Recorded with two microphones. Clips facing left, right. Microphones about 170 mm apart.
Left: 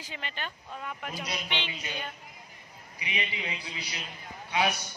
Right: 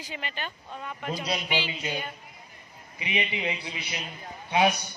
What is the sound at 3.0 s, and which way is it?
A man's voice, 25° right (ahead or behind).